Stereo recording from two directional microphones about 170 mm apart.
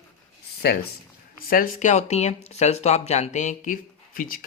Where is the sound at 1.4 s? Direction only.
55° left (ahead or behind).